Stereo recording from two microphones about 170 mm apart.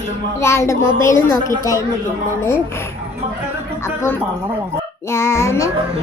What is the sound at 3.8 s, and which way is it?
A child's voice, 15° left (ahead or behind).